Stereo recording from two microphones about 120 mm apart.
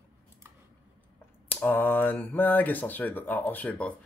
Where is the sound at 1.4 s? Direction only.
15° left (ahead or behind).